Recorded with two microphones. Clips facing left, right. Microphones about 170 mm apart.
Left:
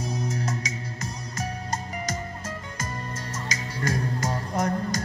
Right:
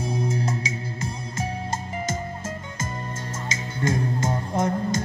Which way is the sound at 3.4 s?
25° right (ahead or behind).